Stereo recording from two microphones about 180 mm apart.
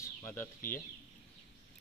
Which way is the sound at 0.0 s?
15° left (ahead or behind).